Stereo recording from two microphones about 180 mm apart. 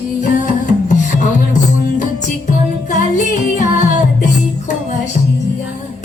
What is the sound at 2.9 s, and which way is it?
Music, 45° left (ahead or behind).